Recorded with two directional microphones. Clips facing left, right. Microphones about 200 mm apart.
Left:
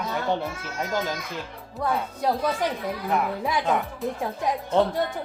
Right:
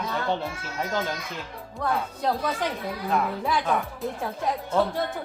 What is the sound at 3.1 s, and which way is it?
Speech, 20° left (ahead or behind).